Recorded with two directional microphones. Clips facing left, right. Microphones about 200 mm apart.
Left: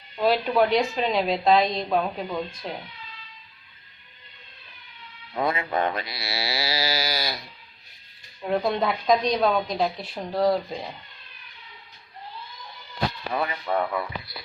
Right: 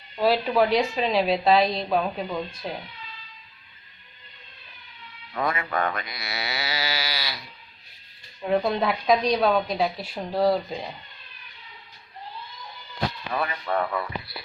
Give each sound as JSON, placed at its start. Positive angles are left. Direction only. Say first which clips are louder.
{"t": 0.2, "sound": "a woman's voice", "louder": "even", "side_deg": 0}
{"t": 5.3, "sound": "mantra", "louder": "left 2 dB", "side_deg": 25}
{"t": 8.4, "sound": "a woman's voice", "louder": "right 1 dB", "side_deg": 0}
{"t": 13.3, "sound": "speech", "louder": "even", "side_deg": 20}